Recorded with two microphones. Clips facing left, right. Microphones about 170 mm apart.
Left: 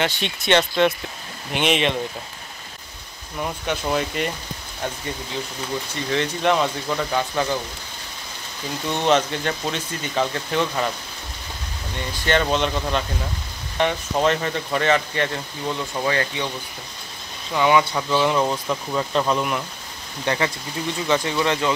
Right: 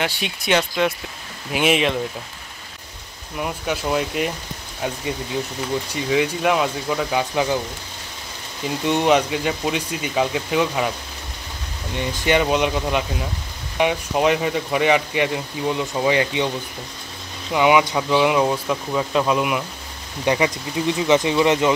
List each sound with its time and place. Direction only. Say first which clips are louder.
0.0 s speech: left 1 dB; 5° right (ahead or behind)
3.3 s speech: right 1 dB; 5° right (ahead or behind)
5.9 s speech: right 4 dB; 10° right (ahead or behind)
8.8 s speech: right 2 dB; 10° right (ahead or behind)
12.0 s speech: right 3 dB; 10° right (ahead or behind)
17.5 s speech: right 2 dB; 15° right (ahead or behind)